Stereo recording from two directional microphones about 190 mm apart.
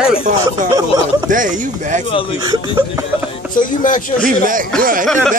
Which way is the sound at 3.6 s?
45° left (ahead or behind).